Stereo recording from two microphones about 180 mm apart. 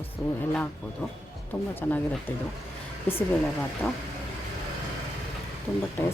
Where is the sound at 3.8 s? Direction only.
15° left (ahead or behind).